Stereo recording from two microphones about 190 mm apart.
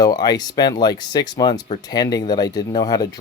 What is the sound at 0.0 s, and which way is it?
Speech, 20° left (ahead or behind).